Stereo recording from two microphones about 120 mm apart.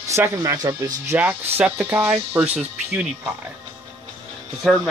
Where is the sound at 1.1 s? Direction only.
15° right (ahead or behind).